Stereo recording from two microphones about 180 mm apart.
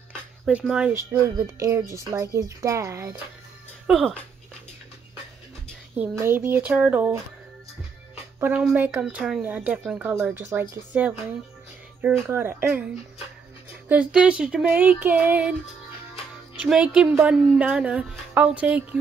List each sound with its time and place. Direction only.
0.5 s speech: 5° right (ahead or behind)
0.9 s speech: 15° right (ahead or behind)
3.8 s speech: 5° right (ahead or behind)
5.9 s speech: 10° right (ahead or behind)
8.4 s speech: 5° right (ahead or behind)
16.5 s speech: 5° right (ahead or behind)